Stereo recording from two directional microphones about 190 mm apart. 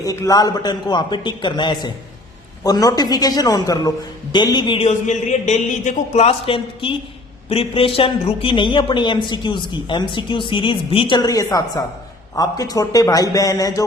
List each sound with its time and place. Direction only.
0.0 s a man's voice: 20° left (ahead or behind)